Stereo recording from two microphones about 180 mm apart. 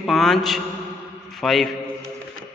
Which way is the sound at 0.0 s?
Centre (ahead or behind).